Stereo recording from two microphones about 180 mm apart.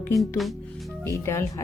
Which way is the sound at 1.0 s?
15° left (ahead or behind).